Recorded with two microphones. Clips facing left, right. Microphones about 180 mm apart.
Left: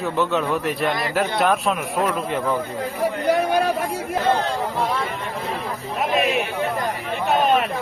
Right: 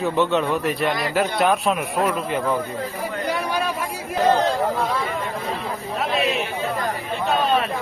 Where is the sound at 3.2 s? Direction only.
55° left (ahead or behind).